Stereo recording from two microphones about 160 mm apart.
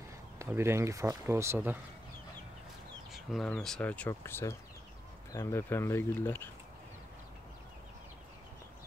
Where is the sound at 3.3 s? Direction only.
Centre (ahead or behind).